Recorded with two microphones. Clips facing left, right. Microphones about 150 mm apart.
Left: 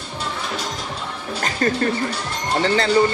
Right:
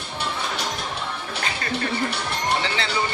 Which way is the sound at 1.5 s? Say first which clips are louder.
Left 7 dB; 45° left (ahead or behind).